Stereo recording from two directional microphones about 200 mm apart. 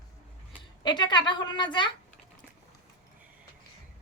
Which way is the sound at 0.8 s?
20° left (ahead or behind).